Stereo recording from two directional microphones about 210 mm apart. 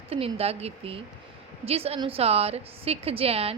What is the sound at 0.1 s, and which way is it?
A woman's voice, 30° right (ahead or behind).